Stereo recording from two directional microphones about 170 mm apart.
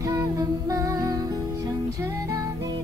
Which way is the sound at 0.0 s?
20° right (ahead or behind).